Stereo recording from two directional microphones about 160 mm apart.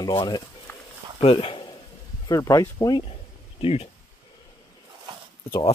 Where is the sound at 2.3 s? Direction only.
20° left (ahead or behind).